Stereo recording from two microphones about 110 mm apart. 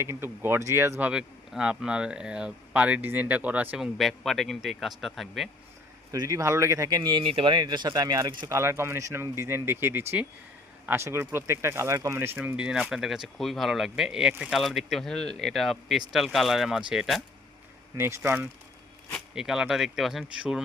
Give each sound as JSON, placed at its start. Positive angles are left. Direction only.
{"t": 0.0, "sound": "speech", "side_deg": -20}
{"t": 1.1, "sound": "speech", "side_deg": -5}
{"t": 3.9, "sound": "speech", "side_deg": 0}
{"t": 6.1, "sound": "speech", "side_deg": -30}
{"t": 8.4, "sound": "speech", "side_deg": -25}
{"t": 12.5, "sound": "speech", "side_deg": -10}
{"t": 17.9, "sound": "speech", "side_deg": -20}
{"t": 19.3, "sound": "speech", "side_deg": -5}